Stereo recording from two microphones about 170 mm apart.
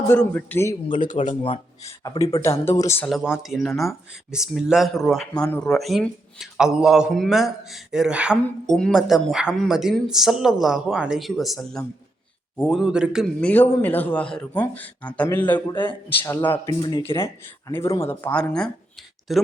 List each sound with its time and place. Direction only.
0.1 s speech: 10° left (ahead or behind)
0.9 s speech: 50° left (ahead or behind)
1.3 s a man's voice: 30° left (ahead or behind)
1.9 s a man's voice: 20° left (ahead or behind)
3.1 s a man's voice: 5° right (ahead or behind)
12.8 s speech: 5° right (ahead or behind)
13.4 s speech: 10° left (ahead or behind)
15.7 s a man's voice: 30° left (ahead or behind)
16.2 s speech: 10° left (ahead or behind)